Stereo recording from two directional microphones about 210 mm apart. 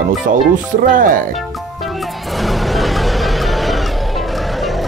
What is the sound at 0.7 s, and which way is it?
Speech, 40° right (ahead or behind).